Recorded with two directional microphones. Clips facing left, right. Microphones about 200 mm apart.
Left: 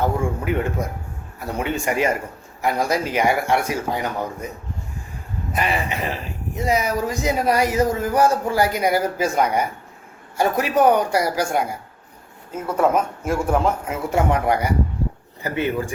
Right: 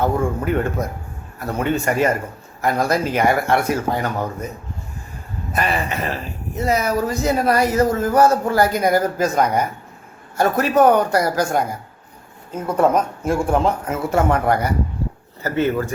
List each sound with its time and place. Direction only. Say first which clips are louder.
0.2 s speech: right 3 dB; 10° left (ahead or behind)
5.5 s speech: right 2 dB; 15° left (ahead or behind)
13.2 s a man's voice: right 3 dB; 30° right (ahead or behind)
13.5 s speech: right 2 dB; 5° left (ahead or behind)